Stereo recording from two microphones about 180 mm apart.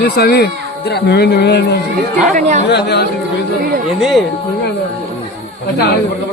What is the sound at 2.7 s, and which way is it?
Speech, 70° left (ahead or behind).